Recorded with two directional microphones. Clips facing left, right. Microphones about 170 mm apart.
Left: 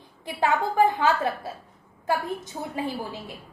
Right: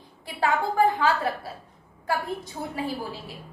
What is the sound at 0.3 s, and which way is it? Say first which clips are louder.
A woman's voice: left 1 dB; 20° left (ahead or behind).